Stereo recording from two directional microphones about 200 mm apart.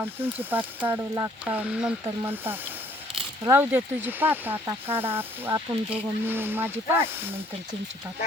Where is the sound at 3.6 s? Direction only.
10° right (ahead or behind).